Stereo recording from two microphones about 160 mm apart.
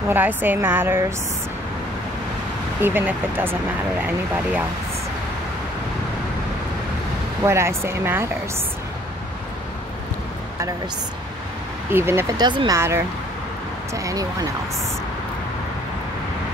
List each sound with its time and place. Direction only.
0.1 s a woman's voice: 10° right (ahead or behind)
2.8 s a woman's voice: 15° right (ahead or behind)
7.4 s a woman's voice: 15° right (ahead or behind)
11.9 s a woman's voice: 15° right (ahead or behind)
12.4 s speech: 25° right (ahead or behind)